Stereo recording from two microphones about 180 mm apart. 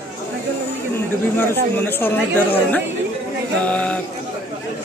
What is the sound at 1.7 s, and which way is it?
Speech, 10° left (ahead or behind).